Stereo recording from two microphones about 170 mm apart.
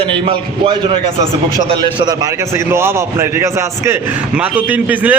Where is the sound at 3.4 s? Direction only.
15° right (ahead or behind).